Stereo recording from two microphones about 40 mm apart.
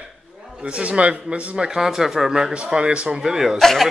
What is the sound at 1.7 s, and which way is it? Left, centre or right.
Speech, centre.